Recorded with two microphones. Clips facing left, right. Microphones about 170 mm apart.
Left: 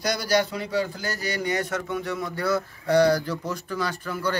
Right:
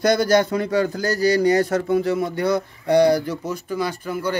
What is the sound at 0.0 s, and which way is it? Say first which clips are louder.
A man's voice: right 7 dB; 50° right (ahead or behind).